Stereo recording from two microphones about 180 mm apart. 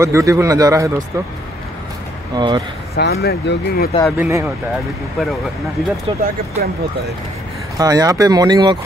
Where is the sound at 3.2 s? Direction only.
60° left (ahead or behind).